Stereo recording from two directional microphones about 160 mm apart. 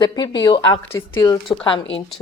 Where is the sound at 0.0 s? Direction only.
25° left (ahead or behind).